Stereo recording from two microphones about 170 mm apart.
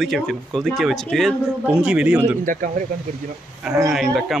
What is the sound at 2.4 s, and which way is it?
Speech, 50° right (ahead or behind).